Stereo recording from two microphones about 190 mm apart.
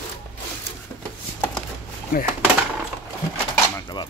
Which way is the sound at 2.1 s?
50° left (ahead or behind).